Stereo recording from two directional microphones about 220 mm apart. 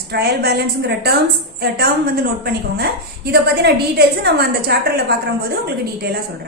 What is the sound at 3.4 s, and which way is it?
A woman's voice, 45° right (ahead or behind).